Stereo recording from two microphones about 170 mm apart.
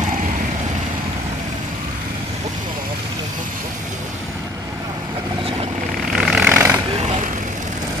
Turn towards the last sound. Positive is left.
turn(degrees=-15)  # may be behind; listen again after turning